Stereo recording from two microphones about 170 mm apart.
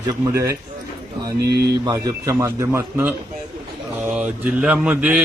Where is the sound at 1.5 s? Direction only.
75° right (ahead or behind).